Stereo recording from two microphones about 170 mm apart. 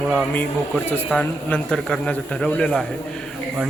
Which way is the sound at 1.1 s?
5° left (ahead or behind).